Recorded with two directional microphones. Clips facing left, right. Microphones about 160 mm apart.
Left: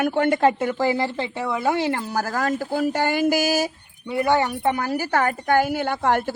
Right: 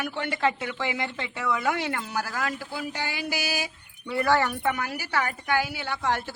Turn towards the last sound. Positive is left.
turn(degrees=50)  # may be behind; listen again after turning